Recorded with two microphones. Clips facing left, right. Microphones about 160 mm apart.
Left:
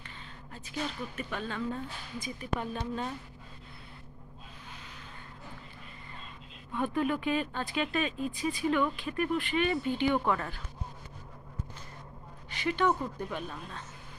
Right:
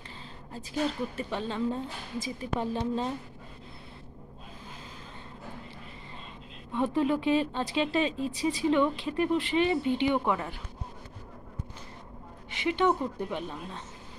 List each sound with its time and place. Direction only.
0.5 s speech: 30° right (ahead or behind)
6.8 s speech: 25° right (ahead or behind)
12.4 s speech: 25° right (ahead or behind)